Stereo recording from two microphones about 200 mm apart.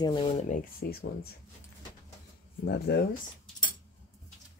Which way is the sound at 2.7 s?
55° left (ahead or behind).